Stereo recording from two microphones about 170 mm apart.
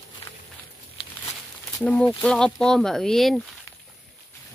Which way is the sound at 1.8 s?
5° left (ahead or behind).